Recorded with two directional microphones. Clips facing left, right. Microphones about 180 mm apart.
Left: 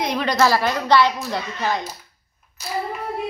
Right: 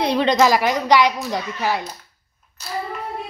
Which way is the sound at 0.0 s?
30° right (ahead or behind).